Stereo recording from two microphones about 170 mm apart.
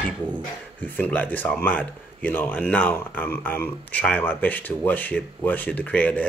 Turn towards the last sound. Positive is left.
turn(degrees=10)  # may be behind; listen again after turning